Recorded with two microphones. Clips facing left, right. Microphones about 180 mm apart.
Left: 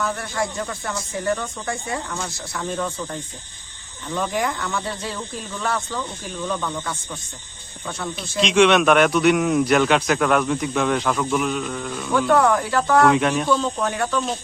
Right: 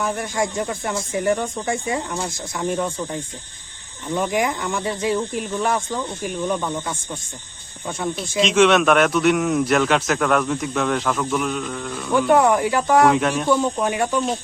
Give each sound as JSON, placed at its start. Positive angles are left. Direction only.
{"t": 0.0, "sound": "speech", "side_deg": -15}
{"t": 8.4, "sound": "a man's voice", "side_deg": 0}
{"t": 12.1, "sound": "speech", "side_deg": -15}
{"t": 13.1, "sound": "a man's voice", "side_deg": 0}
{"t": 13.5, "sound": "speech", "side_deg": -15}